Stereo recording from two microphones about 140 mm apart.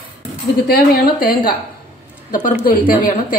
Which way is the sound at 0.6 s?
90° left.